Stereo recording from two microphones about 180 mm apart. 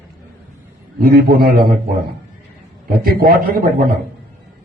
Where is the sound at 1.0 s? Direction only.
55° right (ahead or behind).